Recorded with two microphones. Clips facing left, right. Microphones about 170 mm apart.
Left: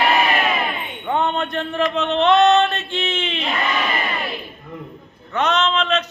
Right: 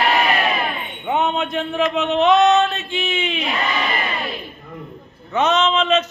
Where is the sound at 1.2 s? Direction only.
5° right (ahead or behind).